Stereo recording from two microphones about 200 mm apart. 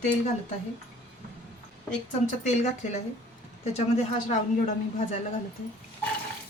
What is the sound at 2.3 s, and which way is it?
A woman's voice, 35° left (ahead or behind).